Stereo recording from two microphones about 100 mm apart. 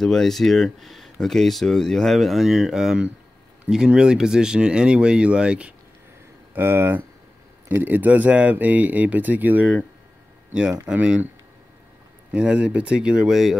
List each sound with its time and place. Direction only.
0.0 s speech: 5° left (ahead or behind); by 5.8 s 10° right (ahead or behind)
6.5 s speech: 25° right (ahead or behind)
10.9 s speech: 15° right (ahead or behind)
12.3 s speech: 10° right (ahead or behind)